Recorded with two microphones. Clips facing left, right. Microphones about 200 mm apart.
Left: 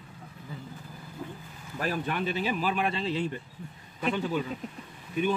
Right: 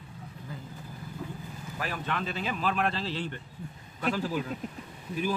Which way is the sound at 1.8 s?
35° left (ahead or behind).